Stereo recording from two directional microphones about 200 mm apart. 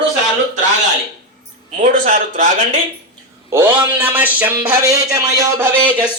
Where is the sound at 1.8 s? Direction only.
40° right (ahead or behind).